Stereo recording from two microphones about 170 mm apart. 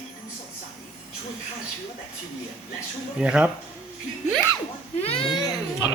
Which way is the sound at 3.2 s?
5° right (ahead or behind).